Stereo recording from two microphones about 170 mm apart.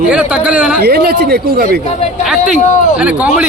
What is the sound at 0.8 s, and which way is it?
Speech, 65° right (ahead or behind).